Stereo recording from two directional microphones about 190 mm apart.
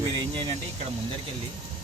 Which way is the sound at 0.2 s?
25° right (ahead or behind).